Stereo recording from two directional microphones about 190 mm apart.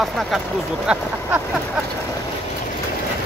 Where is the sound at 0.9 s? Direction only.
10° right (ahead or behind).